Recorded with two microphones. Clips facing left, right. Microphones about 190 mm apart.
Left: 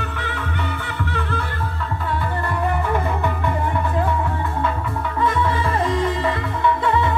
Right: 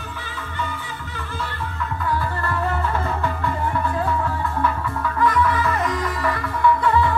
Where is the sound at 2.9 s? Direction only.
20° left (ahead or behind).